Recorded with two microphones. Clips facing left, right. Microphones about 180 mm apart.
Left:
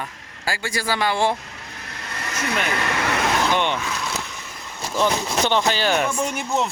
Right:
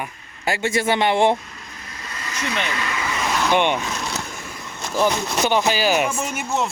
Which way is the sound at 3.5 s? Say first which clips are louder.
Right 3 dB; 15° right (ahead or behind).